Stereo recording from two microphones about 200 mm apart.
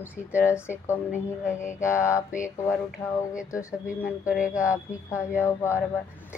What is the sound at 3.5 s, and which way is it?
Speech, 15° left (ahead or behind).